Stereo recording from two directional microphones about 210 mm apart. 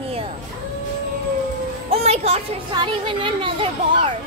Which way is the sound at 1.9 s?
30° right (ahead or behind).